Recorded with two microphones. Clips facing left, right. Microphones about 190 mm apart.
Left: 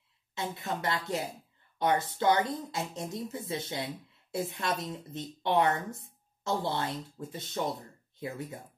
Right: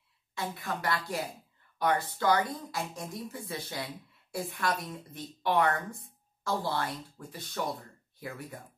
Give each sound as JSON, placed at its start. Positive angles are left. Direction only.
{"t": 0.3, "sound": "speech", "side_deg": 20}